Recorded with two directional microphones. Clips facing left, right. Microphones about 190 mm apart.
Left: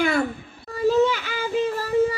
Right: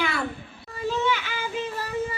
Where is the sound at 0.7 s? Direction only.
40° left (ahead or behind).